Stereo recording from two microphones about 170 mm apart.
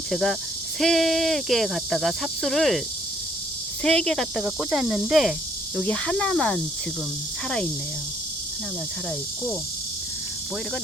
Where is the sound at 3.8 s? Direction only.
5° left (ahead or behind).